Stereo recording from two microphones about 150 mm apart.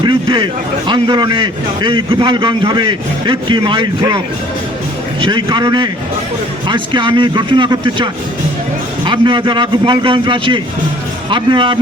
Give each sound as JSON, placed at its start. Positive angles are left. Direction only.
{"t": 0.0, "sound": "a man's voice", "side_deg": -30}
{"t": 5.2, "sound": "a man's voice", "side_deg": -30}